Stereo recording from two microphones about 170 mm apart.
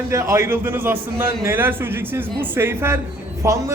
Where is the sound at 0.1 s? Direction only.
15° right (ahead or behind).